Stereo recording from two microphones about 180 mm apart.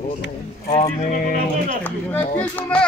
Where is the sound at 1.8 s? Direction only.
10° left (ahead or behind).